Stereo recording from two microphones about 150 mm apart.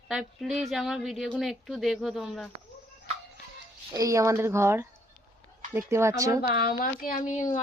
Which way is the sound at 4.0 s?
20° right (ahead or behind).